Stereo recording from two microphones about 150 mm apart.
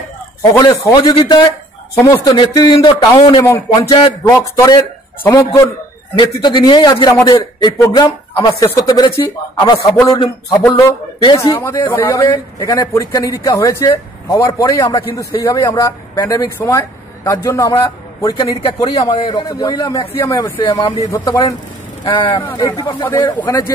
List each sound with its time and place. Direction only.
0.4 s speech: 20° left (ahead or behind)
3.4 s a man's voice: 20° left (ahead or behind)
22.4 s a man's voice: 10° left (ahead or behind)
22.7 s speech: 25° left (ahead or behind)